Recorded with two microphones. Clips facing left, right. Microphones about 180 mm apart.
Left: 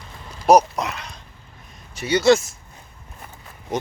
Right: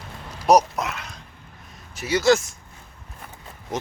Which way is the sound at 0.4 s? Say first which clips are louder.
Left 2 dB; centre (ahead or behind).